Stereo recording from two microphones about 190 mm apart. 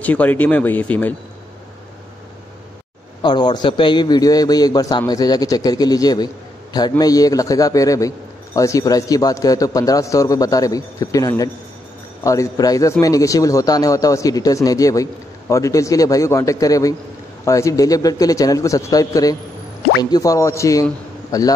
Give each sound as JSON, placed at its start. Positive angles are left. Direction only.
{"t": 0.0, "sound": "speech", "side_deg": 10}
{"t": 3.2, "sound": "a man's voice", "side_deg": 25}